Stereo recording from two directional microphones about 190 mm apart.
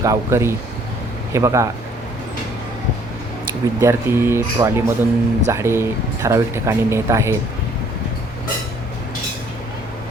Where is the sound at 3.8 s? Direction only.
15° right (ahead or behind).